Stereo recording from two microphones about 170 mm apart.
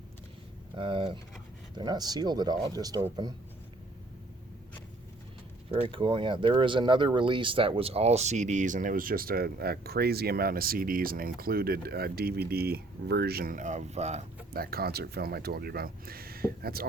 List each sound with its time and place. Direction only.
0.8 s speech: 30° right (ahead or behind)
5.7 s speech: 30° right (ahead or behind)
14.5 s speech: 65° right (ahead or behind)